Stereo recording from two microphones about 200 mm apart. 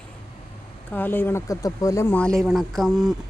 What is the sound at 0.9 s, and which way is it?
Speech, 10° left (ahead or behind).